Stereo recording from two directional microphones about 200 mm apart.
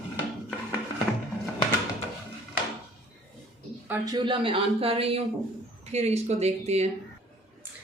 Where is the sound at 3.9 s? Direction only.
20° right (ahead or behind).